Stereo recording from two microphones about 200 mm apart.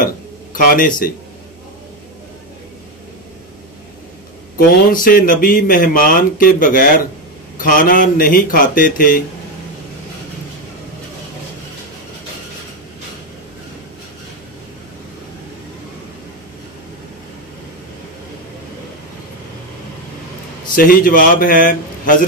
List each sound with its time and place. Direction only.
0.0 s a sound: 45° left (ahead or behind)
4.6 s speech: 45° left (ahead or behind)
20.7 s speech: 45° left (ahead or behind)